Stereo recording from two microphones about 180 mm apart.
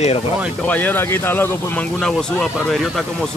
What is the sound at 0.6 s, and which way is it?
Speech, 10° left (ahead or behind).